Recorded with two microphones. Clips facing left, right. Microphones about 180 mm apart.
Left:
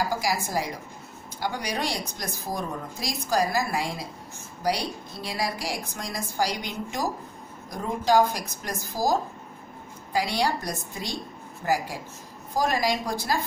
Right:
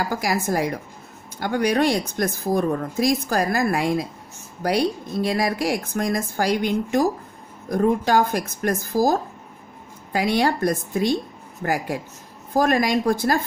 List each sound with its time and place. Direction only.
0.1 s speech: 55° right (ahead or behind)